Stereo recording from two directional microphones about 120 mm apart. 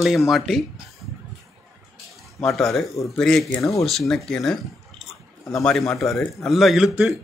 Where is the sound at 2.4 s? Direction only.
Centre (ahead or behind).